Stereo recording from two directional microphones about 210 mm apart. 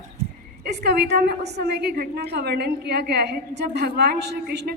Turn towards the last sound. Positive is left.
turn(degrees=-55)  # may be behind; listen again after turning